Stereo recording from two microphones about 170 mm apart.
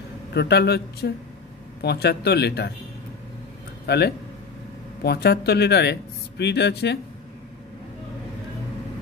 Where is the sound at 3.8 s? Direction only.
75° left (ahead or behind).